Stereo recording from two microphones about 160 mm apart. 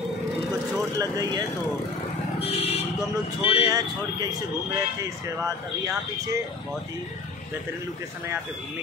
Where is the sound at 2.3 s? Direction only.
40° left (ahead or behind).